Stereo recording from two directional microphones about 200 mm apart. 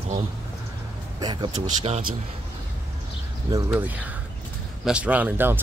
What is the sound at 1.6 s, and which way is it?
Speech, 35° right (ahead or behind).